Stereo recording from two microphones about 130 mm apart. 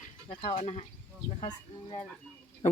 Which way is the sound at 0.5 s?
60° left (ahead or behind).